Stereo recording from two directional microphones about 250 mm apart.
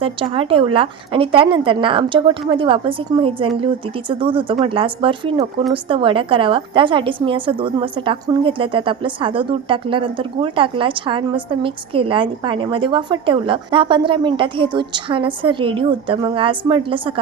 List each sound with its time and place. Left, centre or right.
0.0 s a woman's voice: right